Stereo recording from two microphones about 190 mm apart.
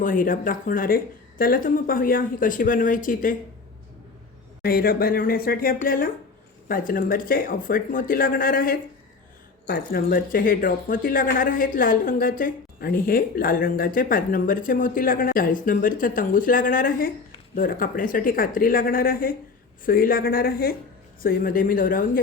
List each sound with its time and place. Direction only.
0.0 s speech: 45° left (ahead or behind)
4.6 s speech: 50° left (ahead or behind)